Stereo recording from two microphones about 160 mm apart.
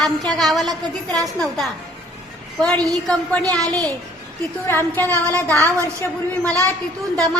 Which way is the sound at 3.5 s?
5° left (ahead or behind).